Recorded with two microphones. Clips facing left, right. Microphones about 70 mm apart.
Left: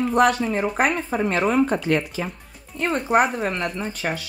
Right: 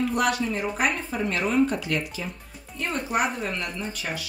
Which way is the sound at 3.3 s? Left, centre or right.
Left.